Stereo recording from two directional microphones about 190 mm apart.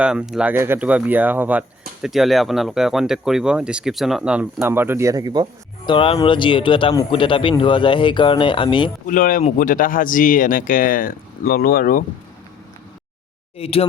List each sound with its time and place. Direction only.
0.0 s speech: 5° right (ahead or behind); by 5.5 s 20° right (ahead or behind)
5.8 s speech: 25° left (ahead or behind)
9.0 s speech: 45° left (ahead or behind)
13.6 s speech: 30° left (ahead or behind)